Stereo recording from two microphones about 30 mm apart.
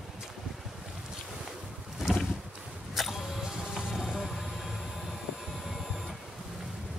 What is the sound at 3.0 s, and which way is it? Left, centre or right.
Music, centre.